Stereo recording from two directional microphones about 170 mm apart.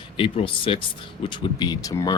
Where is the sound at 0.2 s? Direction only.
30° left (ahead or behind).